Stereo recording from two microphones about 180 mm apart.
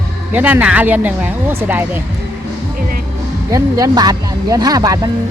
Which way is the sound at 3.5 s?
20° right (ahead or behind).